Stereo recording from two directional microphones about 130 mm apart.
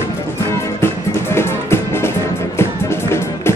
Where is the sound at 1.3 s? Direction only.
20° left (ahead or behind).